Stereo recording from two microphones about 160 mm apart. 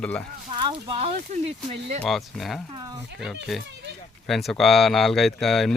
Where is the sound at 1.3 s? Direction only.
45° right (ahead or behind).